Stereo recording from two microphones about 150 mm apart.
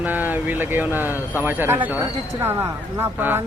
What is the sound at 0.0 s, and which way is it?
Speech, 10° right (ahead or behind).